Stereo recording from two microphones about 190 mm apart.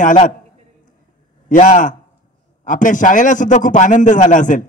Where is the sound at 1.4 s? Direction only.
40° left (ahead or behind).